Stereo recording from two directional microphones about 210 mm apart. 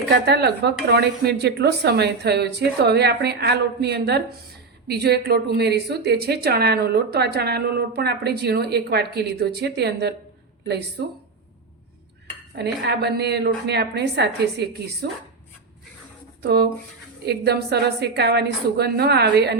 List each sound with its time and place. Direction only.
0.3 s a woman's voice: 50° right (ahead or behind)
12.5 s a woman's voice: 55° right (ahead or behind)
16.4 s a woman's voice: 50° right (ahead or behind)